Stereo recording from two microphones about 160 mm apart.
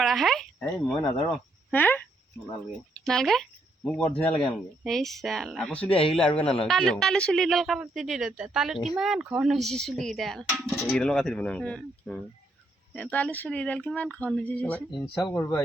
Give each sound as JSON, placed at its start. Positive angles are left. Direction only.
{"t": 0.0, "sound": "speech", "side_deg": 0}
{"t": 1.7, "sound": "a sound", "side_deg": 10}
{"t": 2.5, "sound": "a man's voice", "side_deg": 5}
{"t": 5.9, "sound": "a man's voice", "side_deg": 35}
{"t": 6.1, "sound": "a man's voice", "side_deg": 5}
{"t": 15.2, "sound": "speech", "side_deg": 25}